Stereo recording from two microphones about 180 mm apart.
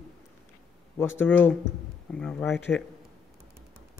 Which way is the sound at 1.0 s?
10° left (ahead or behind).